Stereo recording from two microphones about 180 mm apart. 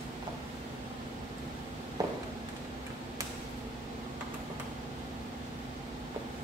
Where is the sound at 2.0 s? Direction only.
20° right (ahead or behind).